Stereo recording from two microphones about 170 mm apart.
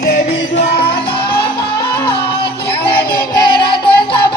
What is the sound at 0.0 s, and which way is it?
Music, 55° left (ahead or behind).